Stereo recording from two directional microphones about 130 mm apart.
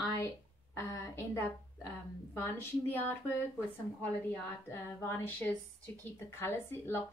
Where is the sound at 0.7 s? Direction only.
25° left (ahead or behind).